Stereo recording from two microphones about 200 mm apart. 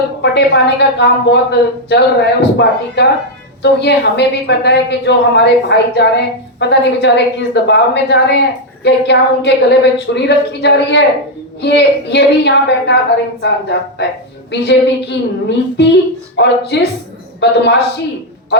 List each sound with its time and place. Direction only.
0.2 s a woman's voice: 60° left (ahead or behind)